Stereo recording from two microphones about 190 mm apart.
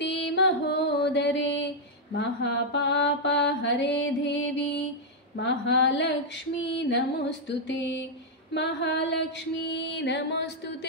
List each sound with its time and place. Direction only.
0.3 s music: 65° left (ahead or behind)
2.1 s mantra: 65° left (ahead or behind)
8.5 s music: 65° left (ahead or behind)